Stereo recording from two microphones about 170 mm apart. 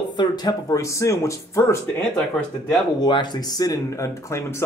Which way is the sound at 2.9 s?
25° left (ahead or behind).